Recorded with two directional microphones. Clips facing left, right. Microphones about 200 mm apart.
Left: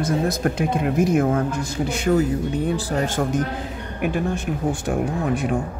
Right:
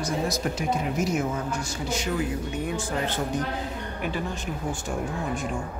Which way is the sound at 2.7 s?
35° left (ahead or behind).